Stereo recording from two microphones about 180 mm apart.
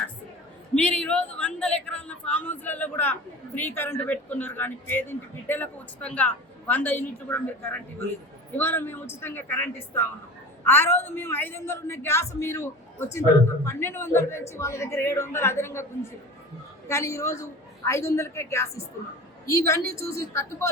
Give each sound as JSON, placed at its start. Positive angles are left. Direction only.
{"t": 0.8, "sound": "speech", "side_deg": 5}
{"t": 16.9, "sound": "speech", "side_deg": 15}